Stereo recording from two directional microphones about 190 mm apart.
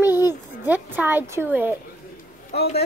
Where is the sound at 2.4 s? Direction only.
55° left (ahead or behind).